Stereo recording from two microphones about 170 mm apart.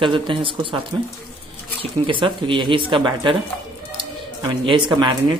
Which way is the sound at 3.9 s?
30° right (ahead or behind).